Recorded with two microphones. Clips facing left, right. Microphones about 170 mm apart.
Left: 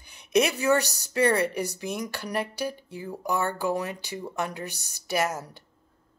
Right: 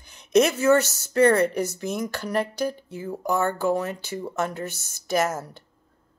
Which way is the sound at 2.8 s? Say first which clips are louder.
Right 4 dB; 45° right (ahead or behind).